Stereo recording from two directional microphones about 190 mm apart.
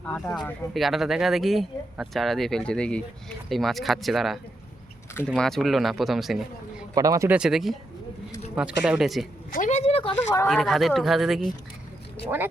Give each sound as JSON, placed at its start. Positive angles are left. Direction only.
{"t": 0.0, "sound": "speech", "side_deg": 5}
{"t": 6.9, "sound": "speech", "side_deg": -20}
{"t": 9.5, "sound": "a sound", "side_deg": 40}
{"t": 10.4, "sound": "speech", "side_deg": 0}